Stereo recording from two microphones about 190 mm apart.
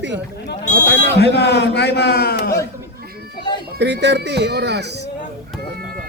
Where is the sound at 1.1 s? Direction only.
60° left (ahead or behind).